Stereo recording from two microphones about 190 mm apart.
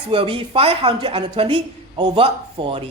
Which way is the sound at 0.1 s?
30° right (ahead or behind).